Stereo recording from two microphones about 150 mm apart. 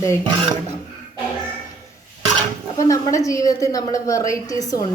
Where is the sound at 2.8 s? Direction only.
20° left (ahead or behind).